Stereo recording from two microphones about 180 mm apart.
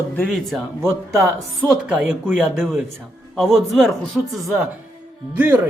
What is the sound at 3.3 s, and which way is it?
Speech, centre (ahead or behind).